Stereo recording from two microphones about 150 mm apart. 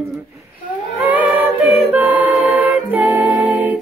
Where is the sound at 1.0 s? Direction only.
10° right (ahead or behind).